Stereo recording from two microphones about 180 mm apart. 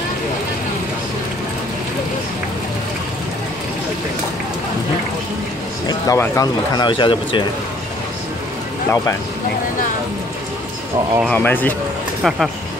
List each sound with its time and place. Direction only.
5.9 s speech: 15° left (ahead or behind)
11.2 s speech: 10° left (ahead or behind)
12.2 s speech: centre (ahead or behind)